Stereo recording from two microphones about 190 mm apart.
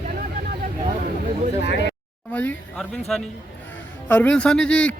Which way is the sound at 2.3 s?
10° left (ahead or behind).